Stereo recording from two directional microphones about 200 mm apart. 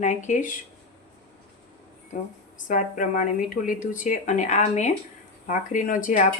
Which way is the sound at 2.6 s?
40° left (ahead or behind).